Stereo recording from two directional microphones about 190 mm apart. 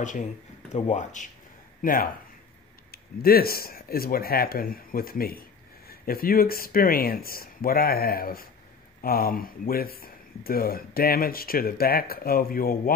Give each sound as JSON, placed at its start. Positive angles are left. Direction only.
{"t": 0.0, "sound": "speech", "side_deg": 40}